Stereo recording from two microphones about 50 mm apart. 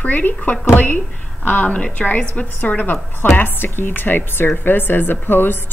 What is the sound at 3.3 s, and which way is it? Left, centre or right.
A woman's voice, left.